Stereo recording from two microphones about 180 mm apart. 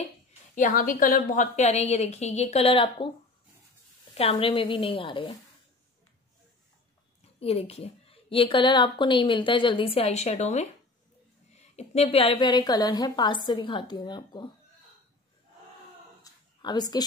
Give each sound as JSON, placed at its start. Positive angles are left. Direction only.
{"t": 0.6, "sound": "a woman's voice", "side_deg": 45}
{"t": 4.1, "sound": "a woman's voice", "side_deg": 35}
{"t": 7.3, "sound": "a woman's voice", "side_deg": 35}
{"t": 16.3, "sound": "a sound", "side_deg": 20}